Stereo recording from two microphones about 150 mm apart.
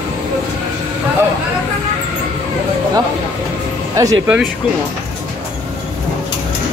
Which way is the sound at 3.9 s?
25° right (ahead or behind).